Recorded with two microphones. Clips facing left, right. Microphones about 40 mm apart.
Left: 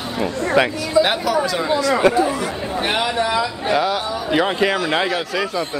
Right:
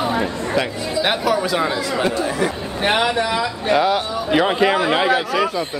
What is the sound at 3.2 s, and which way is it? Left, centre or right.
Speech, centre.